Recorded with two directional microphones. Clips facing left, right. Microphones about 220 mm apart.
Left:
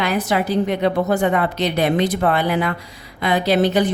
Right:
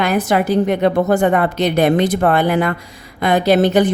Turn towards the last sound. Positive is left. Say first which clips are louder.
# right 4 dB
turn(degrees=-50)  # may be behind; listen again after turning